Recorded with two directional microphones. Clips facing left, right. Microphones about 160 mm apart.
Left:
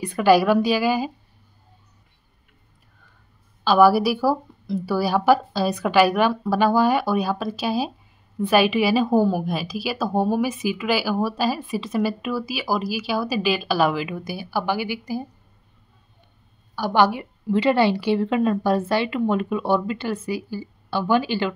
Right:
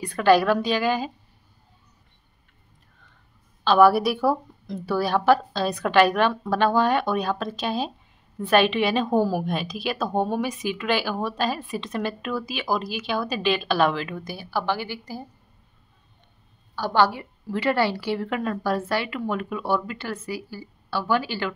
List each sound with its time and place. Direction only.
0.0 s a woman's voice: 10° left (ahead or behind)
3.6 s a woman's voice: 5° left (ahead or behind)
16.7 s a woman's voice: 15° left (ahead or behind)